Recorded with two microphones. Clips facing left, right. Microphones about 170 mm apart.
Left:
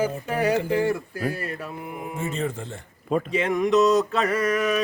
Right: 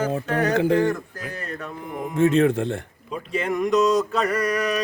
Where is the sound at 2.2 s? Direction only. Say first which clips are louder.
Right 12 dB; 75° right (ahead or behind).